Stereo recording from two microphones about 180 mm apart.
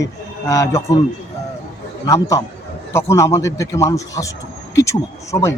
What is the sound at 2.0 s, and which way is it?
A man's voice, 20° left (ahead or behind).